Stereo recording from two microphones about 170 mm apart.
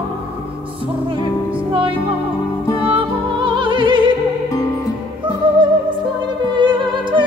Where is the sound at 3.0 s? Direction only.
30° right (ahead or behind).